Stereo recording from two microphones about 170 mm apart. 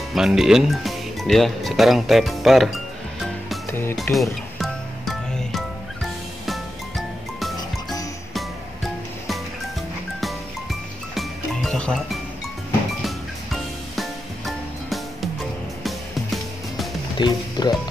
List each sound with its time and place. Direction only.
0.1 s speech: centre (ahead or behind)
4.1 s music: centre (ahead or behind)
10.2 s music: centre (ahead or behind)
17.2 s speech: 25° left (ahead or behind)